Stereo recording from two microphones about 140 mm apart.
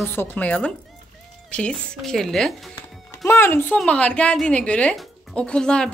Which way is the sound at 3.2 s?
15° left (ahead or behind).